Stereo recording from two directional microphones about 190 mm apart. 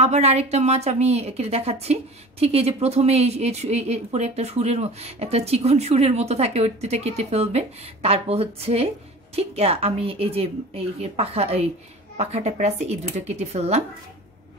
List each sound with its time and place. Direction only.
0.0 s speech: 35° right (ahead or behind)